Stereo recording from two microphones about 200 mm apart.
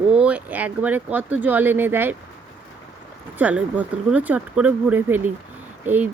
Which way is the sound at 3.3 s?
5° right (ahead or behind).